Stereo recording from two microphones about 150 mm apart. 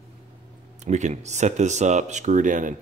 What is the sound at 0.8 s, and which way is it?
Speech, 50° right (ahead or behind).